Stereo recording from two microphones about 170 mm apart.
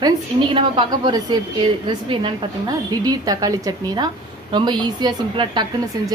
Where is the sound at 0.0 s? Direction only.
30° right (ahead or behind).